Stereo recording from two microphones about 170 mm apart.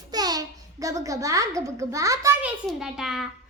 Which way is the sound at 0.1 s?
25° right (ahead or behind).